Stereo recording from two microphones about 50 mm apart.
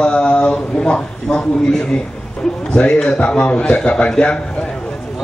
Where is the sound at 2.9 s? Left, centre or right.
Centre.